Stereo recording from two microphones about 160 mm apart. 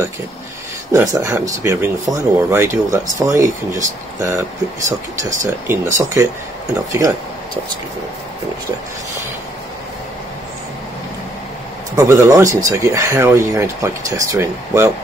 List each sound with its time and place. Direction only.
0.9 s speech: 20° right (ahead or behind)
11.9 s speech: 20° right (ahead or behind)